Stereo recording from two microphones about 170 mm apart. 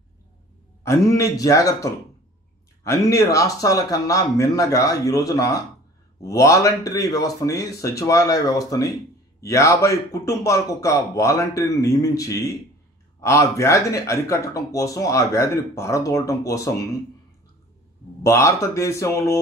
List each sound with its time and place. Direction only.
0.8 s a man's voice: 20° left (ahead or behind)
18.2 s speech: 15° left (ahead or behind)